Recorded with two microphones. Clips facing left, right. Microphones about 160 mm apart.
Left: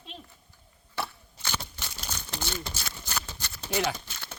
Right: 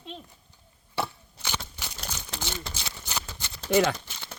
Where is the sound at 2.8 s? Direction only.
20° right (ahead or behind).